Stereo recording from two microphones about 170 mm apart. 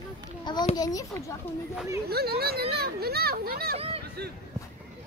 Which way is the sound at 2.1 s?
65° right (ahead or behind).